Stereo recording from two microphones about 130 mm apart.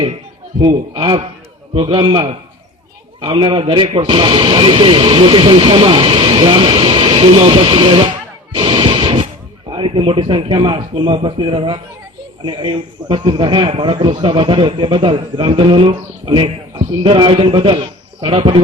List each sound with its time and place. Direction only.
0.9 s speech: 40° right (ahead or behind)
8.5 s a sound: 40° right (ahead or behind)
9.6 s speech: 40° right (ahead or behind)